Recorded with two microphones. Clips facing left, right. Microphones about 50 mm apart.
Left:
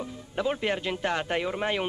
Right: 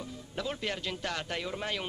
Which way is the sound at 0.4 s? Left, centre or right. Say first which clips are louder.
Left 7 dB; left.